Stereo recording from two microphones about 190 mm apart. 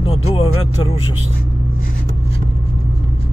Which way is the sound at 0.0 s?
20° left (ahead or behind).